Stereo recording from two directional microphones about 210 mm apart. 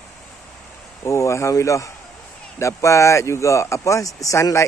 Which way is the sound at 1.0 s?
15° left (ahead or behind).